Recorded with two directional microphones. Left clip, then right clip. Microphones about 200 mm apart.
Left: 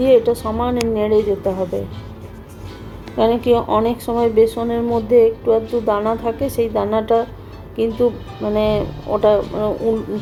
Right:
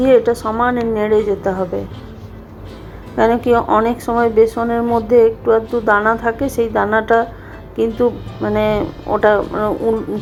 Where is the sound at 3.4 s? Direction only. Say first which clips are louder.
Right 2 dB; 35° right (ahead or behind).